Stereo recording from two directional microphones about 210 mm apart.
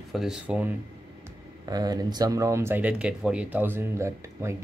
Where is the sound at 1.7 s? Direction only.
20° right (ahead or behind).